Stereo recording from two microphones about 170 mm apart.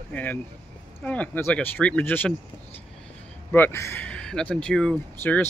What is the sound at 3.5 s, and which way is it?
Speech, 10° left (ahead or behind).